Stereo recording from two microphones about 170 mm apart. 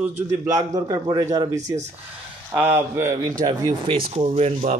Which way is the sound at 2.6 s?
15° right (ahead or behind).